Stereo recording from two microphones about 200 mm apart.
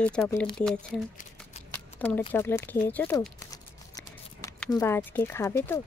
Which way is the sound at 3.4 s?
15° left (ahead or behind).